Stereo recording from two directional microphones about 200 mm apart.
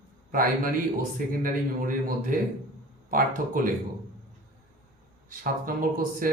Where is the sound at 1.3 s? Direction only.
45° right (ahead or behind).